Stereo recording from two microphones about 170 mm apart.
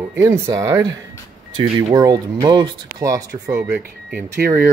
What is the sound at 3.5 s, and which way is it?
Speech, 10° right (ahead or behind).